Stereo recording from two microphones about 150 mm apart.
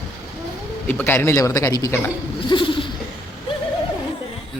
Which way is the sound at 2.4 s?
35° left (ahead or behind).